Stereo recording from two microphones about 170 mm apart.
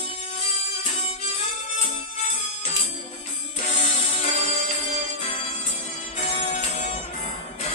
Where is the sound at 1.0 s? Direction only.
35° left (ahead or behind).